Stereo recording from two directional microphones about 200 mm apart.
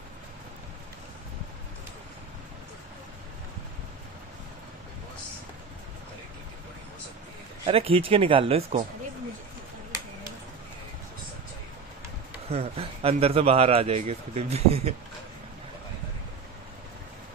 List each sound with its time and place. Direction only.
7.6 s speech: 30° right (ahead or behind)
12.4 s a man's voice: 30° right (ahead or behind)